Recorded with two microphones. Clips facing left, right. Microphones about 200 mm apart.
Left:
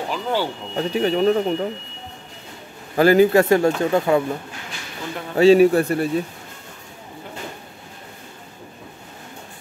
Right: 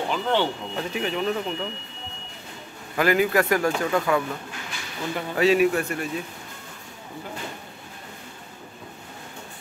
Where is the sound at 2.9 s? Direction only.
35° left (ahead or behind).